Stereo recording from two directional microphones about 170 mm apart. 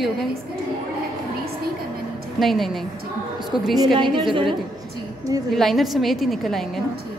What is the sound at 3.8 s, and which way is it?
Speech, 30° right (ahead or behind).